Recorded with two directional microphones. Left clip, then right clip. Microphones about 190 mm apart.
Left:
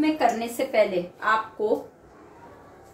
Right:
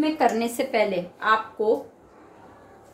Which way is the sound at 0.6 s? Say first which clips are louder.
Even; 55° right (ahead or behind).